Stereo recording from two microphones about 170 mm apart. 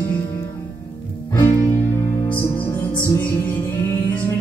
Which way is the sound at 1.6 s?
10° left (ahead or behind).